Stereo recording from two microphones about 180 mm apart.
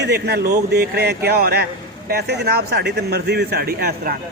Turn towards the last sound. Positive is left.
turn(degrees=-55)  # may be behind; listen again after turning